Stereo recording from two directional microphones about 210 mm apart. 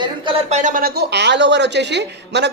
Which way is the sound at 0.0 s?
25° right (ahead or behind).